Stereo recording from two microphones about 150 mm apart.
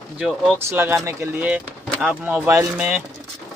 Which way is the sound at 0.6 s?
15° right (ahead or behind).